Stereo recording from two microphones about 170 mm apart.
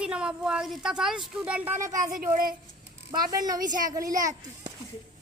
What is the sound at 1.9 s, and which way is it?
Speech, 50° right (ahead or behind).